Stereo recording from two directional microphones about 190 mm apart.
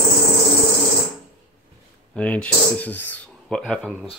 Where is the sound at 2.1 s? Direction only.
5° left (ahead or behind).